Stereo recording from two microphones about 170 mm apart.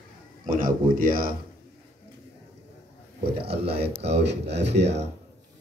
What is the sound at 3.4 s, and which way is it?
Speech, 70° right (ahead or behind).